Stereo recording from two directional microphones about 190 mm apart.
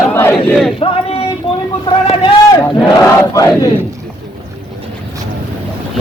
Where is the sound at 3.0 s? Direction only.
10° left (ahead or behind).